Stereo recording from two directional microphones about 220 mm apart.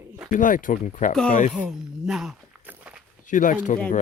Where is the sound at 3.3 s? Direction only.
35° left (ahead or behind).